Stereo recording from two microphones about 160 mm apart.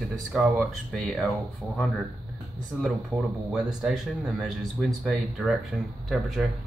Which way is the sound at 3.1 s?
15° right (ahead or behind).